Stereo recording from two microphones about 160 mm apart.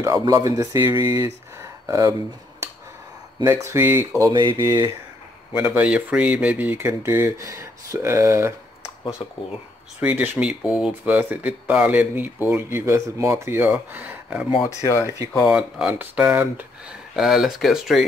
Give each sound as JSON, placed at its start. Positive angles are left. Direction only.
{"t": 0.2, "sound": "speech", "side_deg": -20}
{"t": 3.4, "sound": "speech", "side_deg": -15}
{"t": 4.2, "sound": "speech", "side_deg": -30}
{"t": 5.6, "sound": "speech", "side_deg": -10}
{"t": 9.9, "sound": "speech", "side_deg": -10}
{"t": 14.6, "sound": "speech", "side_deg": 20}
{"t": 15.3, "sound": "speech", "side_deg": -5}